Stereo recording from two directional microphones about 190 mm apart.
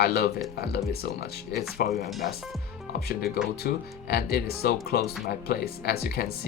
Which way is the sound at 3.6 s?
55° left (ahead or behind).